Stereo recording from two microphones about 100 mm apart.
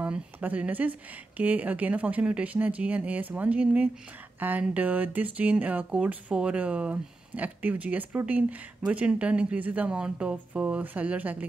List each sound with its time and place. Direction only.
0.0 s speech: 15° right (ahead or behind)